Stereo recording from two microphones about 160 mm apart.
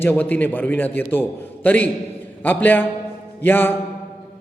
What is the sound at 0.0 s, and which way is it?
A man's voice, 10° left (ahead or behind).